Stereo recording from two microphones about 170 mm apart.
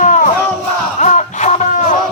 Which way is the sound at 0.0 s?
50° left (ahead or behind).